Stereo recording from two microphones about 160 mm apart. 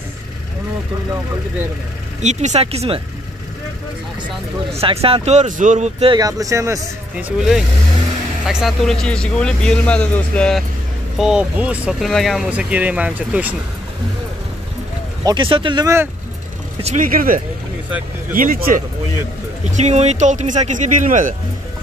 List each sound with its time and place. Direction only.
2.2 s speech: 45° right (ahead or behind)
4.7 s speech: 35° right (ahead or behind)
6.1 s speech: 20° right (ahead or behind)
7.2 s speech: 5° right (ahead or behind)
11.1 s speech: 5° right (ahead or behind)
15.2 s speech: 30° right (ahead or behind)
16.8 s speech: 55° right (ahead or behind)
19.6 s speech: 45° right (ahead or behind)